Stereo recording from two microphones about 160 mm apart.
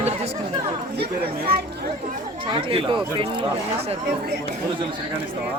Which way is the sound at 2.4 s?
35° right (ahead or behind).